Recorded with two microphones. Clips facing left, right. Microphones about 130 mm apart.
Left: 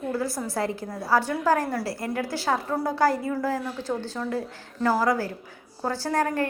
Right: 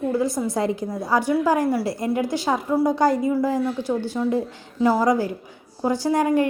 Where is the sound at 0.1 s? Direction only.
20° right (ahead or behind).